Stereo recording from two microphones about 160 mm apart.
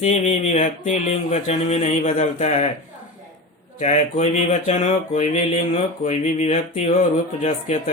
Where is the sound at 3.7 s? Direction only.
45° left (ahead or behind).